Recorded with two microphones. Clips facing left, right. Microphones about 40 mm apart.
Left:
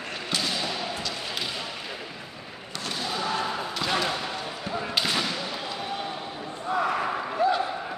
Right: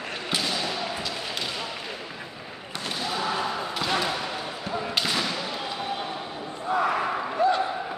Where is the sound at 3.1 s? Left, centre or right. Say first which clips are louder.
Right 1 dB; centre.